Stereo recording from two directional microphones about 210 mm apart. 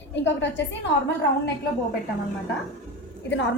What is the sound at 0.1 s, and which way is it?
Speech, 60° left (ahead or behind).